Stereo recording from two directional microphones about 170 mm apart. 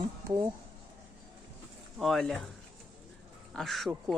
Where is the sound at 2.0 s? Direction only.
Centre (ahead or behind).